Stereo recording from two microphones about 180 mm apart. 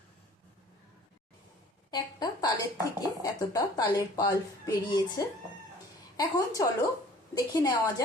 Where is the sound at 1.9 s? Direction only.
20° left (ahead or behind).